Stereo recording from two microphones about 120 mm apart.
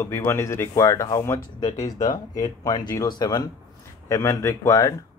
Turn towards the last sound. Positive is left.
turn(degrees=30)  # may be behind; listen again after turning